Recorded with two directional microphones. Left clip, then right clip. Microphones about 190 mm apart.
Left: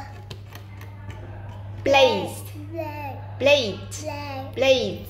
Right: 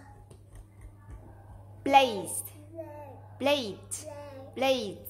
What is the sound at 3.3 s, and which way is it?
A woman's voice, 40° right (ahead or behind).